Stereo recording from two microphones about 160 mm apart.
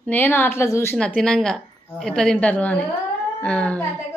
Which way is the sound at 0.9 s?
5° left (ahead or behind).